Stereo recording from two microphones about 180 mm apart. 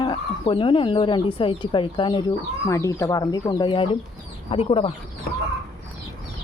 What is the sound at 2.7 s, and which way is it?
Speech, 15° left (ahead or behind).